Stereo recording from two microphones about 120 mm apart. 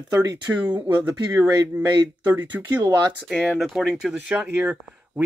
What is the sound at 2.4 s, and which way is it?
Speech, 35° right (ahead or behind).